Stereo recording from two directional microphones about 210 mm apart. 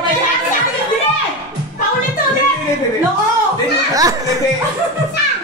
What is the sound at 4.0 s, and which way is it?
Laughter, 15° right (ahead or behind).